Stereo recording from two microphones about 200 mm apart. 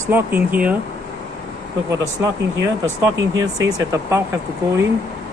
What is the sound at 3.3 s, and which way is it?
Speech, 15° right (ahead or behind).